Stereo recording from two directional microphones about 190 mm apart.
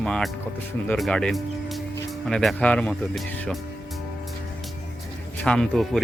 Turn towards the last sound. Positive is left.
turn(degrees=0)  # may be behind; listen again after turning